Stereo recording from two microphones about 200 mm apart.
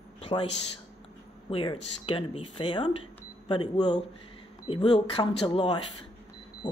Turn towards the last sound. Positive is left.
turn(degrees=20)  # may be behind; listen again after turning